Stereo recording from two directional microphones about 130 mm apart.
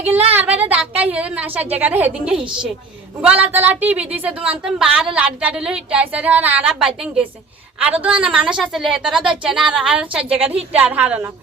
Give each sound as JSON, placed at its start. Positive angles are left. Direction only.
{"t": 0.3, "sound": "a woman's voice", "side_deg": -10}
{"t": 2.4, "sound": "a woman's voice", "side_deg": -40}
{"t": 3.2, "sound": "a woman's voice", "side_deg": -10}